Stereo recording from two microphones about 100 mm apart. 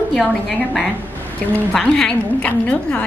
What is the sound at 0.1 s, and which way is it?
A woman's voice, 5° left (ahead or behind).